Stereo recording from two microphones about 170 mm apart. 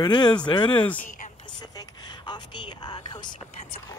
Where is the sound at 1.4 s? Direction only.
25° left (ahead or behind).